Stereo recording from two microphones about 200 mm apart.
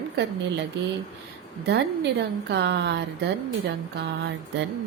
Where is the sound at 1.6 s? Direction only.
60° right (ahead or behind).